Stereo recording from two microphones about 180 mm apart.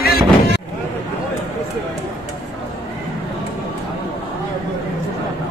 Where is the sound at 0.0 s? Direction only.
55° left (ahead or behind).